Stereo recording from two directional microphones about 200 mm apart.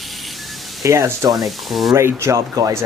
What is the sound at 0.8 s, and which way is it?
Speech, 15° right (ahead or behind).